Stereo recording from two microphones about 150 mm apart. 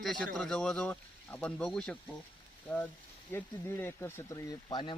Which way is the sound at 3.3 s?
15° left (ahead or behind).